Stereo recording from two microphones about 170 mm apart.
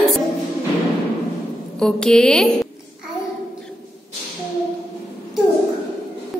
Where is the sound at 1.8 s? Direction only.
5° left (ahead or behind).